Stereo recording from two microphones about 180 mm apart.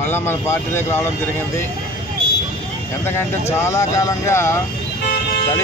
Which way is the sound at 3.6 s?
15° left (ahead or behind).